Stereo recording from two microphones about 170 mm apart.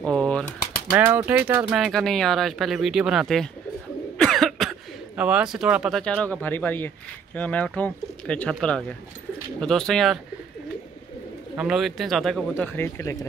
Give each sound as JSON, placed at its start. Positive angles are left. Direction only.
{"t": 0.0, "sound": "a sound", "side_deg": 5}
{"t": 0.9, "sound": "speech", "side_deg": -10}
{"t": 11.5, "sound": "speech", "side_deg": -5}